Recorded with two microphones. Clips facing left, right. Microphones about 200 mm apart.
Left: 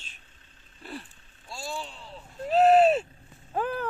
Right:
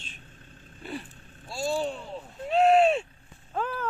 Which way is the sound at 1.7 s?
45° right (ahead or behind).